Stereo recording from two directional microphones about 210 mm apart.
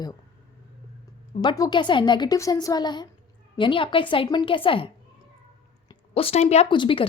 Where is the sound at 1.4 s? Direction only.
20° left (ahead or behind).